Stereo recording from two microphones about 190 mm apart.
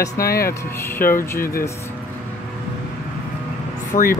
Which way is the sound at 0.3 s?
50° left (ahead or behind).